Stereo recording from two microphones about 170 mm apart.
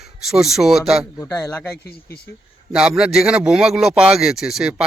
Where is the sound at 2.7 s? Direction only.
5° right (ahead or behind).